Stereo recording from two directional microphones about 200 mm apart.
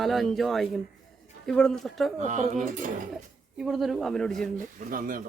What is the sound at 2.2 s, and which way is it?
Speech, 35° right (ahead or behind).